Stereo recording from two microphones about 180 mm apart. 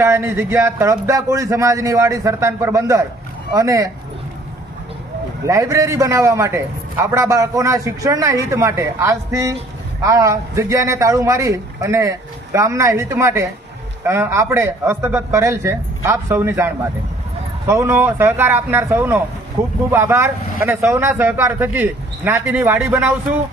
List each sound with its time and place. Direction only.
0.0 s a man's voice: 15° right (ahead or behind)
5.5 s a man's voice: 15° right (ahead or behind)